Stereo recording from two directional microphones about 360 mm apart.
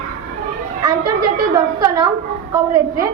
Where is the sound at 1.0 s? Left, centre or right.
Right.